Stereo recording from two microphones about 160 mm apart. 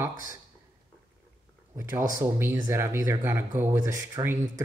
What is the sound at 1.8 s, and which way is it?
Speech, 15° right (ahead or behind).